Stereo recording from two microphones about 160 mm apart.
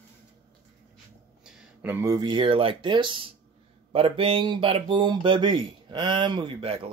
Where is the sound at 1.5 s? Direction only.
15° right (ahead or behind).